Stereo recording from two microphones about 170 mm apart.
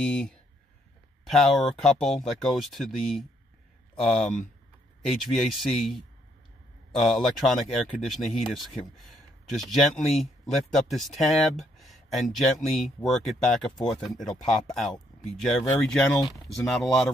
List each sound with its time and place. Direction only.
0.0 s speech: 5° left (ahead or behind)
15.6 s speech: 20° left (ahead or behind)
15.9 s speech: centre (ahead or behind)